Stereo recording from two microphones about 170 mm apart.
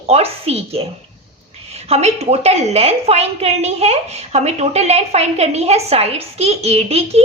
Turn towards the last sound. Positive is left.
turn(degrees=-35)  # may be behind; listen again after turning